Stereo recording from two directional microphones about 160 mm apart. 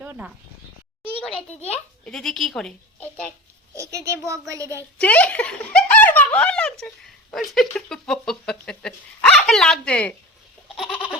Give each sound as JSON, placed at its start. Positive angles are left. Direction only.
{"t": 0.0, "sound": "speech", "side_deg": -10}
{"t": 1.3, "sound": "a child's voice", "side_deg": 35}
{"t": 2.0, "sound": "speech", "side_deg": 5}
{"t": 3.8, "sound": "a child's voice", "side_deg": -20}
{"t": 4.9, "sound": "speech", "side_deg": 10}